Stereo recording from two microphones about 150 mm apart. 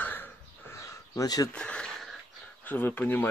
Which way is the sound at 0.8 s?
25° left (ahead or behind).